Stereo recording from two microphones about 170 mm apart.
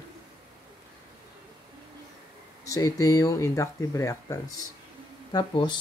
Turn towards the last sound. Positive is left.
turn(degrees=25)  # may be behind; listen again after turning